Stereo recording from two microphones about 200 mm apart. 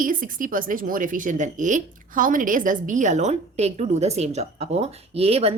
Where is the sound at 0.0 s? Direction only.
45° right (ahead or behind).